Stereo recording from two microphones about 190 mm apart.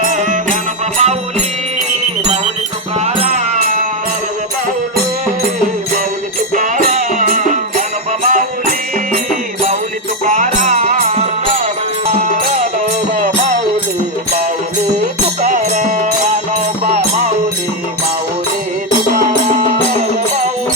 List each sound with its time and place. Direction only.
0.0 s music: 45° right (ahead or behind)
6.5 s music: 45° right (ahead or behind)
10.2 s music: 40° right (ahead or behind)
15.4 s music: 40° right (ahead or behind)